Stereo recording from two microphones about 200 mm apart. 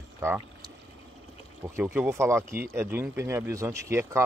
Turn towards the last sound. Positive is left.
turn(degrees=-15)  # may be behind; listen again after turning